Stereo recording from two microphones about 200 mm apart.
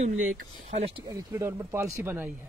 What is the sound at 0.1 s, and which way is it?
Speech, 85° right.